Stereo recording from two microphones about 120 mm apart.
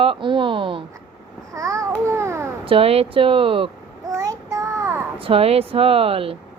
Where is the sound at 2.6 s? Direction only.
50° right (ahead or behind).